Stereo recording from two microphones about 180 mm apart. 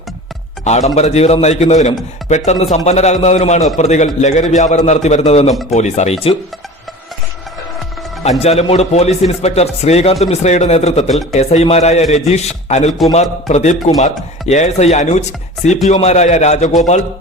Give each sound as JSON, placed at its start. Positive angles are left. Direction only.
{"t": 0.6, "sound": "a man's voice", "side_deg": 40}
{"t": 8.4, "sound": "a man's voice", "side_deg": 35}